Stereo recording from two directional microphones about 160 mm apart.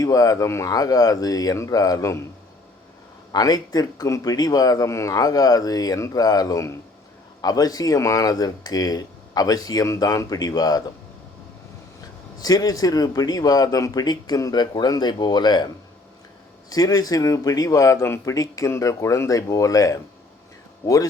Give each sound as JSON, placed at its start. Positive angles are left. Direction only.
{"t": 0.0, "sound": "speech", "side_deg": 20}
{"t": 3.3, "sound": "speech", "side_deg": 25}
{"t": 12.4, "sound": "speech", "side_deg": 25}